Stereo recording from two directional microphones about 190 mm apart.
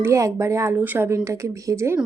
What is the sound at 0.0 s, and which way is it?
Speech, 15° right (ahead or behind).